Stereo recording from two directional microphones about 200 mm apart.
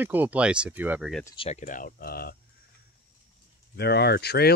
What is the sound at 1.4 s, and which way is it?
Speech, 35° left (ahead or behind).